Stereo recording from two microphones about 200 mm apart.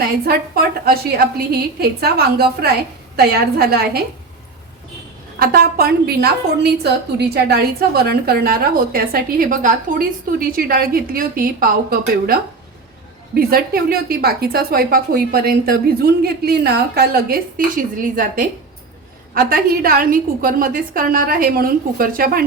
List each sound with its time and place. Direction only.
0.3 s a woman's voice: 50° right (ahead or behind)
5.4 s a woman's voice: 50° right (ahead or behind)